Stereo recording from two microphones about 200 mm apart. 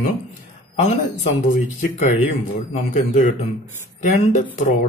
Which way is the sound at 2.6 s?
35° left (ahead or behind).